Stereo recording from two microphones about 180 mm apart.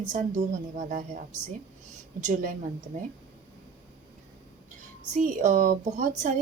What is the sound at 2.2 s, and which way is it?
Speech, 50° right (ahead or behind).